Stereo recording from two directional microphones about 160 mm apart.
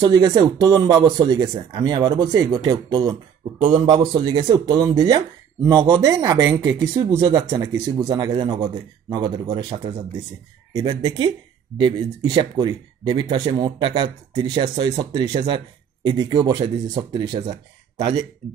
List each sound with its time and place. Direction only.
0.0 s speech: 20° right (ahead or behind)